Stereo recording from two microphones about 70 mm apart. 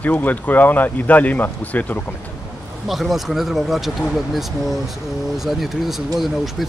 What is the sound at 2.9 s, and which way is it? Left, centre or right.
Speech, centre.